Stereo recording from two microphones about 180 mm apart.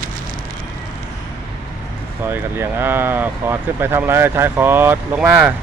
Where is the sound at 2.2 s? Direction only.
10° right (ahead or behind).